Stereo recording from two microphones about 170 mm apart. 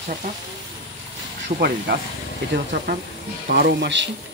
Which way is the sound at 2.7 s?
85° right.